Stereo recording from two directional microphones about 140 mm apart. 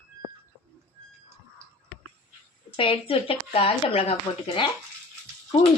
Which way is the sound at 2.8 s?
40° left (ahead or behind).